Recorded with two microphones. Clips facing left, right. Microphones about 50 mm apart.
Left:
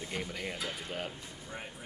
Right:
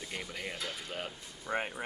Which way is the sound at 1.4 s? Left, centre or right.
Right.